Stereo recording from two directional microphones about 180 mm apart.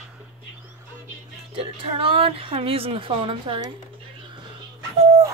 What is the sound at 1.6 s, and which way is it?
A woman's voice, 30° right (ahead or behind).